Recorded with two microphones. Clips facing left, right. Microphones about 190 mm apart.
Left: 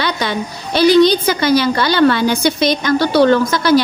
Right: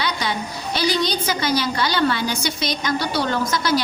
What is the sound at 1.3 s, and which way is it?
A woman's voice, 65° left (ahead or behind).